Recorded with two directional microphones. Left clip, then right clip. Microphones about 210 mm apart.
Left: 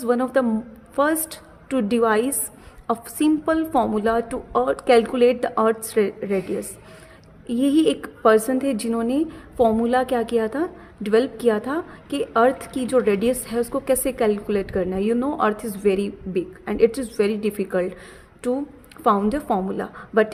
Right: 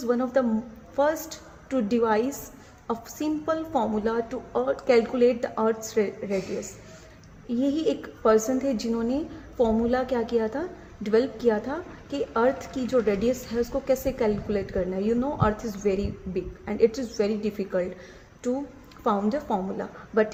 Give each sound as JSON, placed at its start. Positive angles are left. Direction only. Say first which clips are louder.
{"t": 0.0, "sound": "a woman's voice", "louder": "left 4 dB", "side_deg": 40}
{"t": 19.0, "sound": "a woman's voice", "louder": "left 6 dB", "side_deg": 35}